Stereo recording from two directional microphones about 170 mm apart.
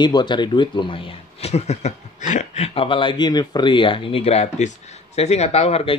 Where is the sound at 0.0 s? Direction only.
25° left (ahead or behind).